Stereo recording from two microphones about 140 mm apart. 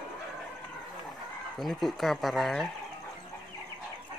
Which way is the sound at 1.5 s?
Centre (ahead or behind).